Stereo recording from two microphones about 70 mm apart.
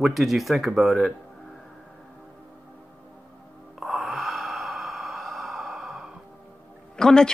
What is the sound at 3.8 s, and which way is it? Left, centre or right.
Sigh, centre.